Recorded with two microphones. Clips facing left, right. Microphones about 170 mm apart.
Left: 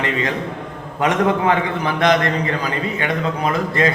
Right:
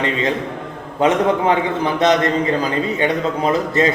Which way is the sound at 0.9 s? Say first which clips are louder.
Right 2 dB; 25° right (ahead or behind).